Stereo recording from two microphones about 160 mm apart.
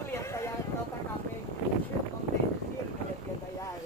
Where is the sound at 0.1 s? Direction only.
15° left (ahead or behind).